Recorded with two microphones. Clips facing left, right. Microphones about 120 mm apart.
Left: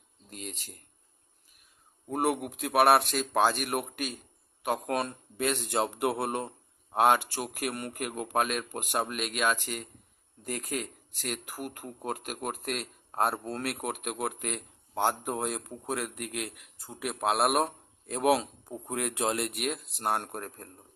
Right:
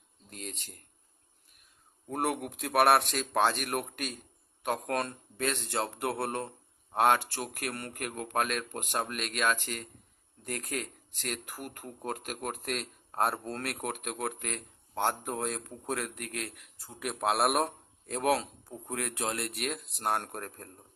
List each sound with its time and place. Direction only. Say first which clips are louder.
0.3 s speech: left 1 dB; centre (ahead or behind)
2.0 s speech: left 3 dB; 5° left (ahead or behind); by 17.0 s 20° left (ahead or behind)
17.0 s speech: left 1 dB; centre (ahead or behind); by 19.6 s 15° left (ahead or behind)
19.6 s speech: right 1 dB; centre (ahead or behind)